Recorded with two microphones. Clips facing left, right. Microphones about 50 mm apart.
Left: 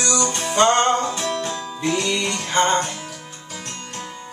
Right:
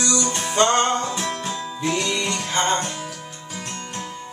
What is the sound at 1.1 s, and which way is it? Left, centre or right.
Music, centre.